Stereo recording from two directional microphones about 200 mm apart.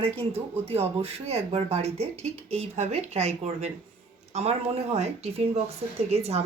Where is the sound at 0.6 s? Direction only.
30° right (ahead or behind).